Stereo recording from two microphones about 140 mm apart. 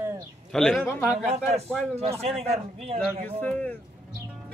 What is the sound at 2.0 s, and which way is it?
Speech, 45° right (ahead or behind).